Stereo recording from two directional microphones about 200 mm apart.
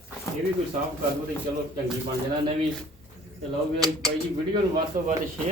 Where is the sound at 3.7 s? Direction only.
20° right (ahead or behind).